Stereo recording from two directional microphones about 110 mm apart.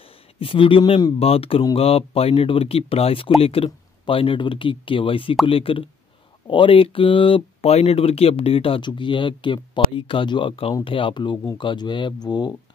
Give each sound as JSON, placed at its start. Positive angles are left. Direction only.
{"t": 0.4, "sound": "speech", "side_deg": 55}